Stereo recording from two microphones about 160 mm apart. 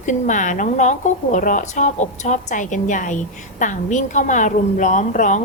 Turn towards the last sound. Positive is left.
turn(degrees=50)  # may be behind; listen again after turning